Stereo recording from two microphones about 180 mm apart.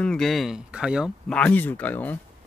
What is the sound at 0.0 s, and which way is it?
Speech, 5° left (ahead or behind).